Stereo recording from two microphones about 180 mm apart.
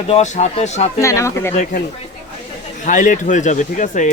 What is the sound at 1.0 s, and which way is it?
Speech, 15° left (ahead or behind).